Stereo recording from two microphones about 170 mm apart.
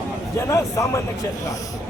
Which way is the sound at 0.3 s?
15° left (ahead or behind).